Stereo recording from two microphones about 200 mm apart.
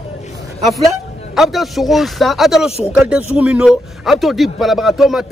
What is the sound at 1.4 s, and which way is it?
A man's voice, centre (ahead or behind).